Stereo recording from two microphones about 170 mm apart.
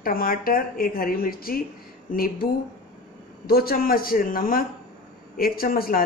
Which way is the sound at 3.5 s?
60° left (ahead or behind).